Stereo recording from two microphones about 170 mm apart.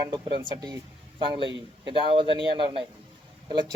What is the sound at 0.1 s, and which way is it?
A man's voice, 30° right (ahead or behind).